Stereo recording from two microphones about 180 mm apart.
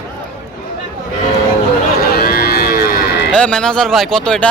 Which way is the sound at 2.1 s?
60° left (ahead or behind).